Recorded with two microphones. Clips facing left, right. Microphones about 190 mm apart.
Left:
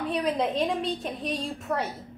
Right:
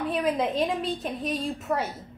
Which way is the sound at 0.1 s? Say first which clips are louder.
Even; centre (ahead or behind).